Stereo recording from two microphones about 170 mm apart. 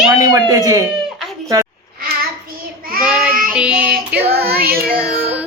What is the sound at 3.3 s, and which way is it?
Child singing, 55° right (ahead or behind).